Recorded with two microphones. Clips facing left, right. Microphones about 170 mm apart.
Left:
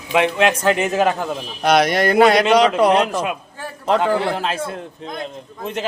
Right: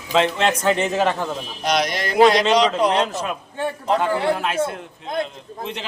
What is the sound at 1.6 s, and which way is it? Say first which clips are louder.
A man's voice: left 7 dB; 55° left (ahead or behind).